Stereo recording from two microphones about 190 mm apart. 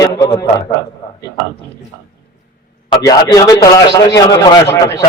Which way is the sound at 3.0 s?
20° left (ahead or behind).